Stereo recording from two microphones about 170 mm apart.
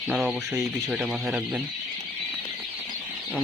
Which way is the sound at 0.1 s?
Centre (ahead or behind).